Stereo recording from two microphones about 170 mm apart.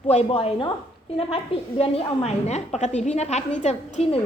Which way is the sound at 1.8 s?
35° left (ahead or behind).